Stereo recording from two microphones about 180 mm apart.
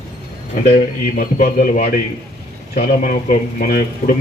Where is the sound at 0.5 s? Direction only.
50° left (ahead or behind).